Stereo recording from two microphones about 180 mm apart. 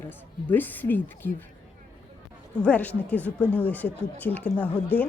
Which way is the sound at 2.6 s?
10° left (ahead or behind).